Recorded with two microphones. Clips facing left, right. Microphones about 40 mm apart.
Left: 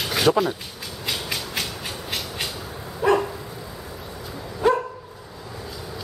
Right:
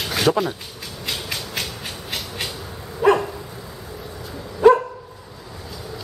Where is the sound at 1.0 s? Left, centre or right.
Centre.